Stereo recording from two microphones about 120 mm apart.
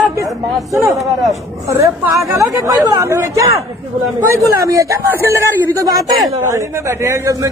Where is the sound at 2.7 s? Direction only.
25° right (ahead or behind).